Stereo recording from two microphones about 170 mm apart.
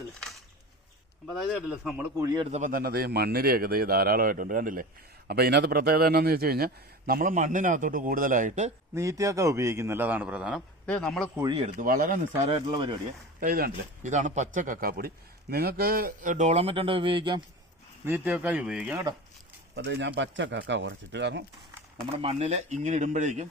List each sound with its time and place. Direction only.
1.3 s speech: centre (ahead or behind)
2.1 s a man's voice: 20° right (ahead or behind)
2.4 s a man's voice: 45° right (ahead or behind)
5.3 s a man's voice: 70° right (ahead or behind); by 8.7 s 45° right (ahead or behind)
9.0 s a man's voice: 20° right (ahead or behind)
10.8 s speech: 5° left (ahead or behind)
11.6 s speech: 55° right (ahead or behind)
12.5 s speech: 30° right (ahead or behind)
13.4 s speech: 60° right (ahead or behind); by 17.4 s 30° right (ahead or behind)
18.0 s a man's voice: 10° right (ahead or behind)
19.7 s speech: 80° right
22.1 s speech: 35° right (ahead or behind)